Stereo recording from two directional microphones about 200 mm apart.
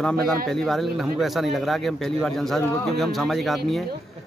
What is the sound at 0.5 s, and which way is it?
Speech, centre (ahead or behind).